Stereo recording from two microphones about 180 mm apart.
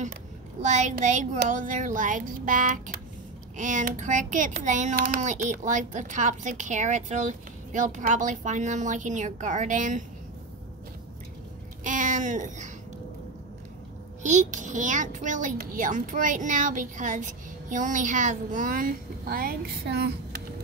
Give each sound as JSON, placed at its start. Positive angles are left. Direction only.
{"t": 0.6, "sound": "a child's voice", "side_deg": -40}
{"t": 11.8, "sound": "a sound", "side_deg": -45}
{"t": 14.2, "sound": "a child's voice", "side_deg": -45}